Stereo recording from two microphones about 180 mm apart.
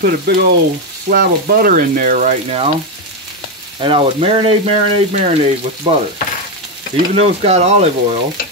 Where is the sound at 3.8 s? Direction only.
30° right (ahead or behind).